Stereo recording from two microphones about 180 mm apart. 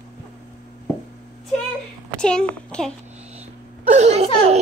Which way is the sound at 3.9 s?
40° right (ahead or behind).